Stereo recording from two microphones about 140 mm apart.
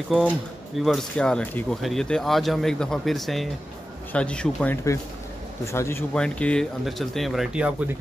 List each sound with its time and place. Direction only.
0.7 s speech: centre (ahead or behind)
5.7 s speech: 20° left (ahead or behind)
6.1 s speech: 5° left (ahead or behind)